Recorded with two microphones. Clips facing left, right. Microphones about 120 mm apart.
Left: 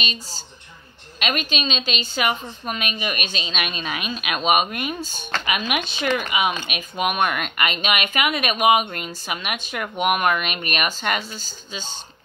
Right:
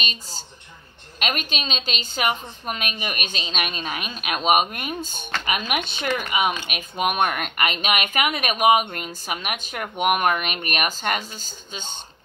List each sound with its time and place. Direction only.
1.2 s a woman's voice: 50° right (ahead or behind)